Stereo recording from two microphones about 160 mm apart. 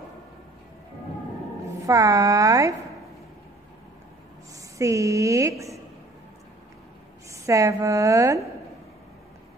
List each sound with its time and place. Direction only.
1.9 s a woman's voice: 20° right (ahead or behind)
4.7 s a woman's voice: 20° right (ahead or behind)
7.2 s a woman's voice: 20° right (ahead or behind)